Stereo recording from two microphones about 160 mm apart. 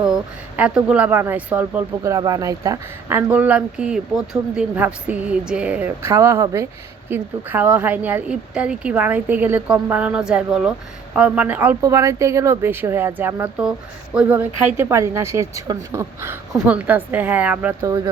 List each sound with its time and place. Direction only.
0.5 s a woman's voice: 5° right (ahead or behind)
17.8 s a woman's voice: 20° right (ahead or behind)